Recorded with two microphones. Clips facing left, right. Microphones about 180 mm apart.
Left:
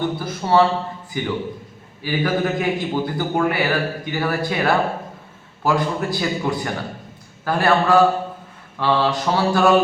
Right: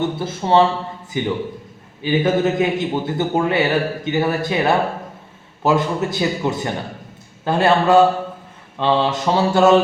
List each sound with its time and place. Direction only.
0.0 s a man's voice: 25° right (ahead or behind)